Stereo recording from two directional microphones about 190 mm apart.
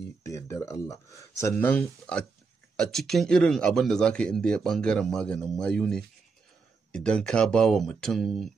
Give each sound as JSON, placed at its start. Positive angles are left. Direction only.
{"t": 0.2, "sound": "speech", "side_deg": 15}